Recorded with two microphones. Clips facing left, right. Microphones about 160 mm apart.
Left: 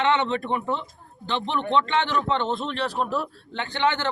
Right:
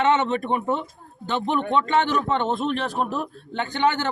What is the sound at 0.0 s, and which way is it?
Speech, 45° right (ahead or behind).